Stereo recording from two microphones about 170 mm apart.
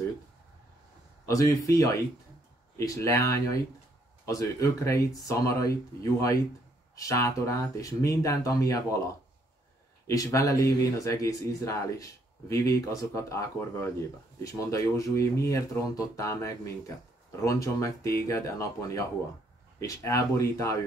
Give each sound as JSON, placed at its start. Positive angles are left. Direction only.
{"t": 1.2, "sound": "speech", "side_deg": 20}
{"t": 7.0, "sound": "speech", "side_deg": 20}
{"t": 10.0, "sound": "speech", "side_deg": 20}